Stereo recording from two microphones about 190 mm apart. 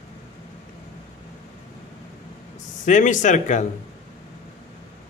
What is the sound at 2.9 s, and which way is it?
Speech, 40° left (ahead or behind).